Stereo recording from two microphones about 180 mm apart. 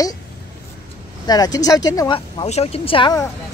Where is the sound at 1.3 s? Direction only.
20° left (ahead or behind).